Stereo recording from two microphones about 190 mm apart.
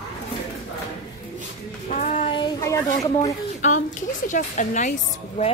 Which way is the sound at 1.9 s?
35° left (ahead or behind).